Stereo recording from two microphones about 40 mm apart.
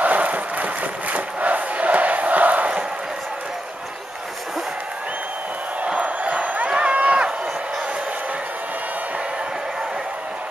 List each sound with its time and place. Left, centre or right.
0.0 s a sound: right
1.1 s crowd: right
5.9 s crowd: right
6.7 s run: right